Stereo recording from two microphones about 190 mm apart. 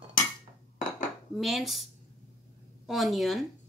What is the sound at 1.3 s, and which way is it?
Speech, centre (ahead or behind).